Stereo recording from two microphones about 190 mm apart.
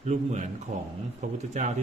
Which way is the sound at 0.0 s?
35° right (ahead or behind).